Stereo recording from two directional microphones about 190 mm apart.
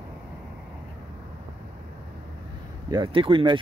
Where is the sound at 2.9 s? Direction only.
25° right (ahead or behind).